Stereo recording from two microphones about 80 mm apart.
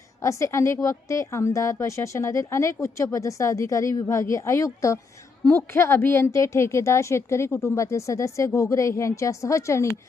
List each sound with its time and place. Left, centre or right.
0.2 s a woman's voice: left